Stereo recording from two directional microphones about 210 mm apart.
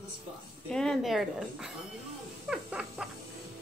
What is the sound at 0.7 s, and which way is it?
Speech, 5° left (ahead or behind).